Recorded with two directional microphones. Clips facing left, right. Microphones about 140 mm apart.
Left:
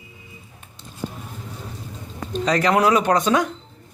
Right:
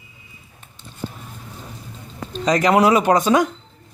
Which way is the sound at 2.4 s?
10° right (ahead or behind).